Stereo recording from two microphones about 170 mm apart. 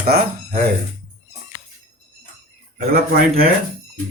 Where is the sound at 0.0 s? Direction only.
60° right (ahead or behind).